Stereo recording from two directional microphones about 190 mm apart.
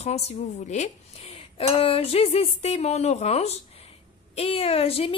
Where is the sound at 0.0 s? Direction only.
35° left (ahead or behind).